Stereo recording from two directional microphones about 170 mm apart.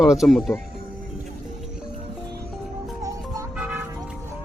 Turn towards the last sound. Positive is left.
turn(degrees=-5)  # may be behind; listen again after turning